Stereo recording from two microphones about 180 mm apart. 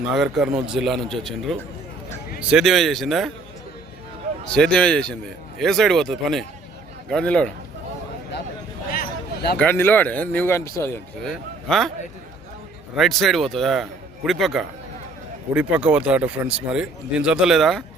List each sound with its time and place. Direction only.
0.1 s a man's voice: centre (ahead or behind)
4.4 s a man's voice: 5° left (ahead or behind)
8.9 s a sound: 60° left (ahead or behind)
9.6 s speech: 10° left (ahead or behind)
11.7 s a man's voice: 5° left (ahead or behind)
13.0 s a man's voice: centre (ahead or behind)